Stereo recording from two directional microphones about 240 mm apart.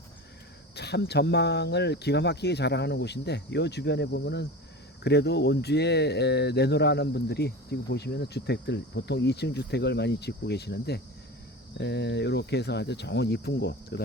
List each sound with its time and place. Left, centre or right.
0.8 s speech: left